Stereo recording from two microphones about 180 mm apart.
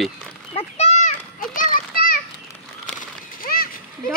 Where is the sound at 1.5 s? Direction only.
55° left (ahead or behind).